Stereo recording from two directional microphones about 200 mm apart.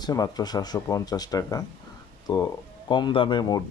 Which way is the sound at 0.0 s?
20° left (ahead or behind).